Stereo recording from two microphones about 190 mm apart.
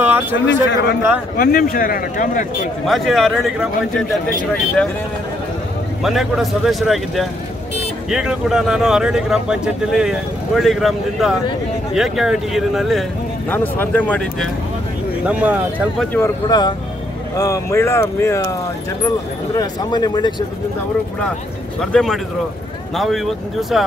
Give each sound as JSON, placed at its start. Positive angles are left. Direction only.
{"t": 0.0, "sound": "a sound", "side_deg": -10}
{"t": 0.5, "sound": "a man's voice", "side_deg": 70}
{"t": 1.3, "sound": "speech", "side_deg": 50}
{"t": 2.9, "sound": "speech", "side_deg": 0}
{"t": 6.0, "sound": "speech", "side_deg": 0}
{"t": 15.2, "sound": "speech", "side_deg": -5}
{"t": 16.1, "sound": "speech", "side_deg": 15}
{"t": 21.9, "sound": "speech", "side_deg": 0}